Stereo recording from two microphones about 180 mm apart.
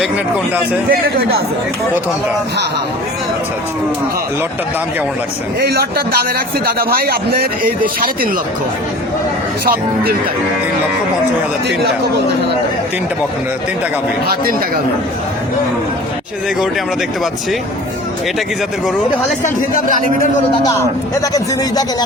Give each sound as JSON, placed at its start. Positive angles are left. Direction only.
{"t": 0.9, "sound": "a man's voice", "side_deg": -60}
{"t": 5.5, "sound": "a man's voice", "side_deg": -60}
{"t": 9.6, "sound": "a man's voice", "side_deg": -55}
{"t": 21.2, "sound": "a man's voice", "side_deg": 20}